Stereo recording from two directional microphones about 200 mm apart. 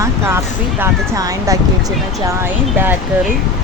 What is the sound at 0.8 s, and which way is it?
Speech, 15° right (ahead or behind).